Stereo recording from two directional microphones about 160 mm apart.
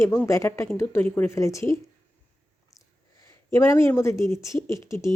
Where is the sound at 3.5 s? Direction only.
15° left (ahead or behind).